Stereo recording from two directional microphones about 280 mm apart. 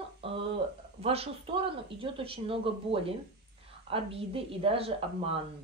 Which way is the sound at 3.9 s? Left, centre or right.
Centre.